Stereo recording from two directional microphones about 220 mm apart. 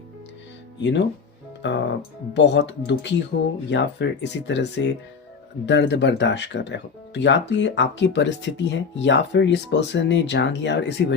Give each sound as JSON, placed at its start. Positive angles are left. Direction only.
{"t": 0.8, "sound": "speech", "side_deg": 55}